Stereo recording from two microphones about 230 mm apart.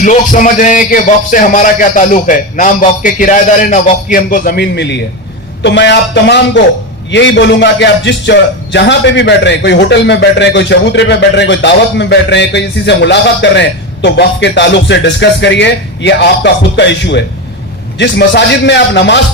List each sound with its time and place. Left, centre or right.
0.0 s a man's voice: left